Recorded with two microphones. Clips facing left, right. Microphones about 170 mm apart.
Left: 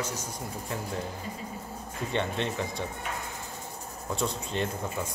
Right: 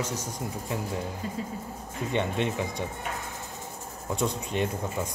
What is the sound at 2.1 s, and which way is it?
Speech, 15° right (ahead or behind).